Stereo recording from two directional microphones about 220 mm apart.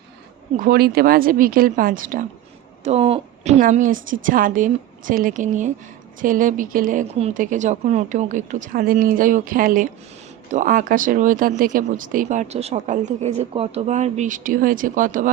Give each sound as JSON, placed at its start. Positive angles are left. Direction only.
{"t": 0.5, "sound": "speech", "side_deg": -40}
{"t": 2.8, "sound": "speech", "side_deg": -25}